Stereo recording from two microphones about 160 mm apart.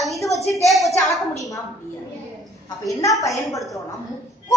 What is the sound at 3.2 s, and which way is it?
Speech, 20° left (ahead or behind).